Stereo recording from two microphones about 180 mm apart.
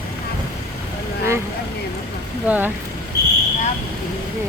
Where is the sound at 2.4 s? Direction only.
10° right (ahead or behind).